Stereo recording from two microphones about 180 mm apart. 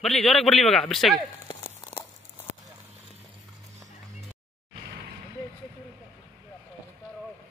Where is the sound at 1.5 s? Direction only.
25° left (ahead or behind).